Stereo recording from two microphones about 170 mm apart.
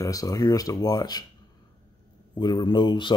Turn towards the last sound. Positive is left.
turn(degrees=30)  # may be behind; listen again after turning